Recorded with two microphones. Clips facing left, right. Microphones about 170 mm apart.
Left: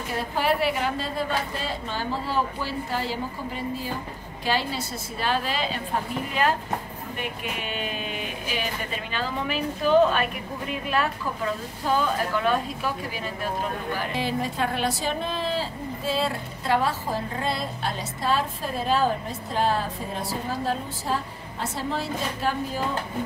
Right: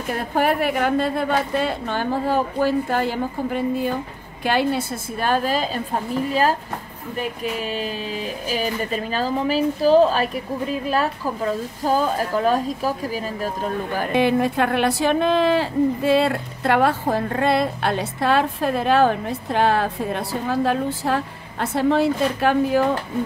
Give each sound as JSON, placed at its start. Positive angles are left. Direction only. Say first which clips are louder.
{"t": 0.3, "sound": "a woman's voice", "louder": "right 4 dB", "side_deg": -50}
{"t": 8.5, "sound": "a woman's voice", "louder": "right 8 dB", "side_deg": -40}
{"t": 13.9, "sound": "speech", "louder": "right 11 dB", "side_deg": -60}